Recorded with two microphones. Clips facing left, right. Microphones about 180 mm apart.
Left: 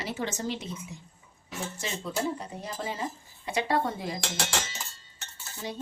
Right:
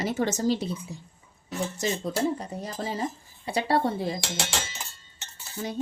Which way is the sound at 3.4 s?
35° right (ahead or behind).